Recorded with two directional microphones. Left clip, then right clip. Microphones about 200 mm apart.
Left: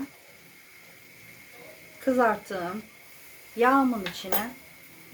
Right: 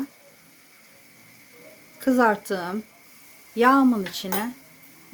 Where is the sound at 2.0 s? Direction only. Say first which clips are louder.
Right 3 dB; 60° right (ahead or behind).